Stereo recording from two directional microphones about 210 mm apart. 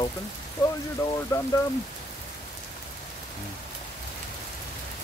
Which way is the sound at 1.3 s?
15° left (ahead or behind).